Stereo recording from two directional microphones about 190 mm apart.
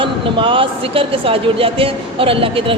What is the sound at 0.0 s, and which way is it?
A man's voice, 25° right (ahead or behind).